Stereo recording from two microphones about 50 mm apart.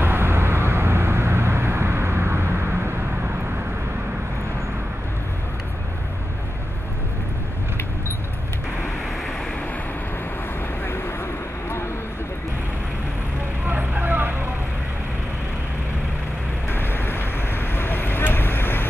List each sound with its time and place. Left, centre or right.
0.0 s vehicle: right
10.8 s vehicle: left
13.7 s vehicle: right
16.6 s vehicle: left